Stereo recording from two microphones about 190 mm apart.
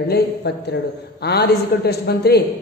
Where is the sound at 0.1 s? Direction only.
65° left (ahead or behind).